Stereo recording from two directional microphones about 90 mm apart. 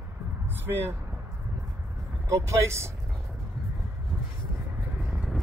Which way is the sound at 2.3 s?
35° right (ahead or behind).